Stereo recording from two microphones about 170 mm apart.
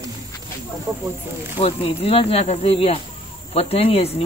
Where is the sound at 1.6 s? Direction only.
35° left (ahead or behind).